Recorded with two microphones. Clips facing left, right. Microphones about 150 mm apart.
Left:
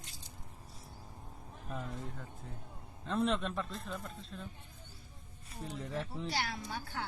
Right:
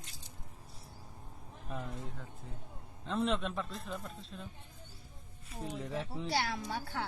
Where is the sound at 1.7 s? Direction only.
Centre (ahead or behind).